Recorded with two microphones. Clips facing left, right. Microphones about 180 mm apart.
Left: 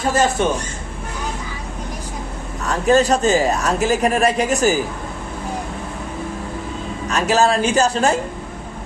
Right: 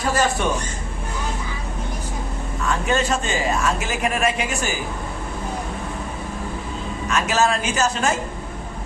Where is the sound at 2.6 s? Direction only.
40° left (ahead or behind).